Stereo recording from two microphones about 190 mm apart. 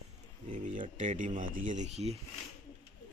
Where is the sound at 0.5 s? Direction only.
40° right (ahead or behind).